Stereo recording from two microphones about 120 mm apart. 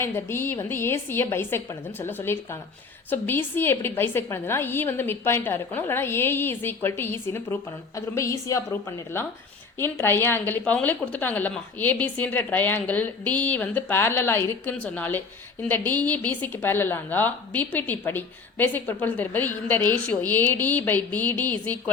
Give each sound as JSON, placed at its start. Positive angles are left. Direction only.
{"t": 0.0, "sound": "a woman's voice", "side_deg": 20}
{"t": 9.7, "sound": "a woman's voice", "side_deg": 20}